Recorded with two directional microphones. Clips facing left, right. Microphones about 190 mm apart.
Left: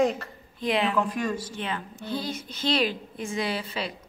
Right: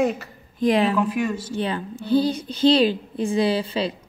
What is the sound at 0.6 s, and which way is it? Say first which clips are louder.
Speech: right 7 dB; 40° right (ahead or behind).